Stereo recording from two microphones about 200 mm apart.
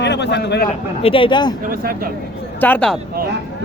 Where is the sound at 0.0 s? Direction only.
60° left (ahead or behind).